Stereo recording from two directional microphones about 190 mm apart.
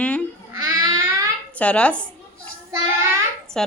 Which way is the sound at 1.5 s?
5° left (ahead or behind).